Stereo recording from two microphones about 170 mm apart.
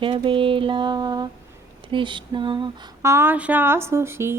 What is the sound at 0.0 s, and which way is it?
Mantra, 30° right (ahead or behind).